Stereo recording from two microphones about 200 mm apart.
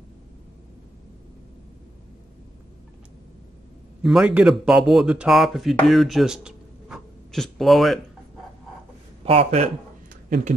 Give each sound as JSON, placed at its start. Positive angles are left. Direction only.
{"t": 4.0, "sound": "speech", "side_deg": -5}
{"t": 9.2, "sound": "a man's voice", "side_deg": -30}